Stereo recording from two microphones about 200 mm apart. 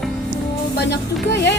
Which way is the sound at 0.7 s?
55° left (ahead or behind).